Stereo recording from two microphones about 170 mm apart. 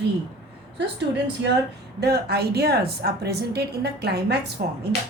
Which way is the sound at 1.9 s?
70° right (ahead or behind).